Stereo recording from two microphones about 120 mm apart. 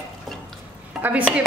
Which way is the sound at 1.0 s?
10° right (ahead or behind).